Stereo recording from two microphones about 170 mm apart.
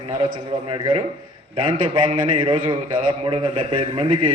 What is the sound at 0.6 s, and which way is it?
Speech, 30° right (ahead or behind).